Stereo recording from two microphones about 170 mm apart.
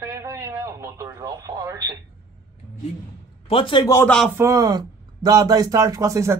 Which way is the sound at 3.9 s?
5° left (ahead or behind).